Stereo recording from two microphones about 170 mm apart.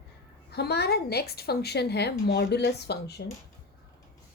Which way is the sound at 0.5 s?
70° left (ahead or behind).